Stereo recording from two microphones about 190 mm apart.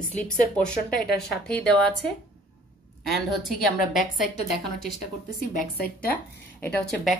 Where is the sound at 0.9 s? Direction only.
55° left (ahead or behind).